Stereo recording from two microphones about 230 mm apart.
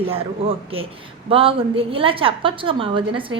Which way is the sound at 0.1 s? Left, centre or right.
Right.